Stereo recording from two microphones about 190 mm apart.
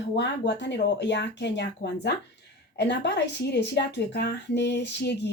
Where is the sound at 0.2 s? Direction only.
65° left (ahead or behind).